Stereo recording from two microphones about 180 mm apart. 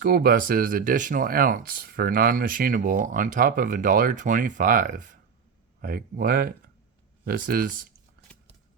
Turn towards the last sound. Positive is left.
turn(degrees=-50)  # may be behind; listen again after turning